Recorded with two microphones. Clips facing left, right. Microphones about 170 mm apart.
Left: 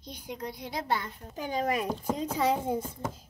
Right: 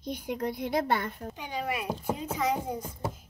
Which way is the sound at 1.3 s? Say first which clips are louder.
Left 6 dB; 40° left (ahead or behind).